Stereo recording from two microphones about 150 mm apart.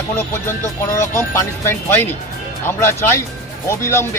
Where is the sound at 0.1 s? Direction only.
15° left (ahead or behind).